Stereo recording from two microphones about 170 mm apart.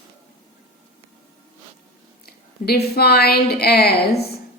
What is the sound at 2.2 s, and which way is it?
A woman's voice, 65° left (ahead or behind).